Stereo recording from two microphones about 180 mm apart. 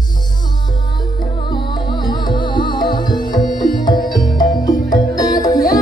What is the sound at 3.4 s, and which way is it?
Music, 50° left (ahead or behind).